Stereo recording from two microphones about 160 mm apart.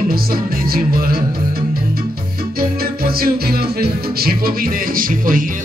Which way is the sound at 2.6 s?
70° right (ahead or behind).